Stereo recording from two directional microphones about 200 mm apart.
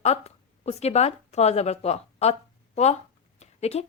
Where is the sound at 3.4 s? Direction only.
30° left (ahead or behind).